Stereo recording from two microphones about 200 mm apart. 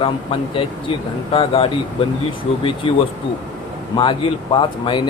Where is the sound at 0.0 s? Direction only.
25° left (ahead or behind).